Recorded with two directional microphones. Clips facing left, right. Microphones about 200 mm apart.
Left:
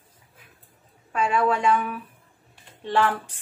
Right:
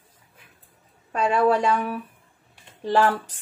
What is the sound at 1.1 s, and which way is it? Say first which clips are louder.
A woman's voice: right 3 dB; 35° right (ahead or behind).